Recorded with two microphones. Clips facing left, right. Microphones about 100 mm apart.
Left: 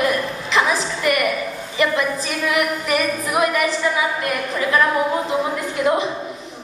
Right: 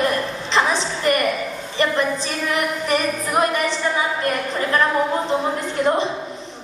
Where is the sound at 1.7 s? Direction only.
35° right (ahead or behind).